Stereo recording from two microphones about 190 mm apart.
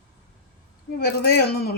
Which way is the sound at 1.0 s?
55° left (ahead or behind).